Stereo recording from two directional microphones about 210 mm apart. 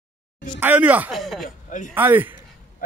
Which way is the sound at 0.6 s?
10° right (ahead or behind).